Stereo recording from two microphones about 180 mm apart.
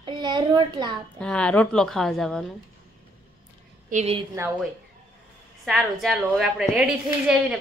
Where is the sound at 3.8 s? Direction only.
40° right (ahead or behind).